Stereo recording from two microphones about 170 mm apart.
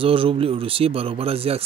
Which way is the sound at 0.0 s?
30° right (ahead or behind).